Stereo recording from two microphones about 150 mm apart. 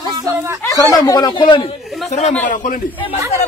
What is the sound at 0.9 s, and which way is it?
Speech, 25° left (ahead or behind).